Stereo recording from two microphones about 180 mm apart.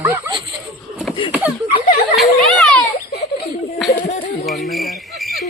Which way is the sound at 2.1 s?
5° left (ahead or behind).